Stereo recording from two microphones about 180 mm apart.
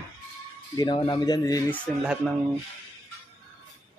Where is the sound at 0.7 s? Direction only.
25° left (ahead or behind).